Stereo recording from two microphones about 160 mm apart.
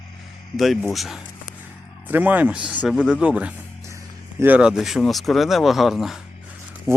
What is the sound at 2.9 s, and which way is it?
Speech, 5° left (ahead or behind).